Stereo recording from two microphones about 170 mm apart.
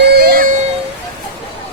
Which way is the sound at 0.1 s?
65° right (ahead or behind).